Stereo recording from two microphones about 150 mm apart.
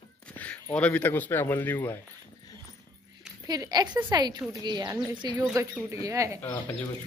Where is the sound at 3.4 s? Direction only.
25° right (ahead or behind).